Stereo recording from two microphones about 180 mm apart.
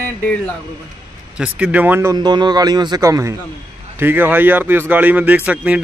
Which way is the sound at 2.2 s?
25° right (ahead or behind).